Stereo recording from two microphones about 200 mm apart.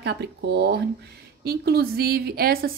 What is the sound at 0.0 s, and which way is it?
Speech, 55° right (ahead or behind).